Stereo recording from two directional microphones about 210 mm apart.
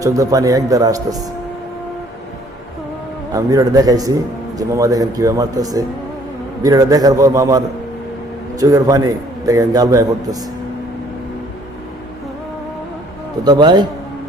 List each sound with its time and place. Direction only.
0.0 s a man's voice: 15° right (ahead or behind)
3.3 s a man's voice: 15° right (ahead or behind)
13.4 s a man's voice: 20° right (ahead or behind)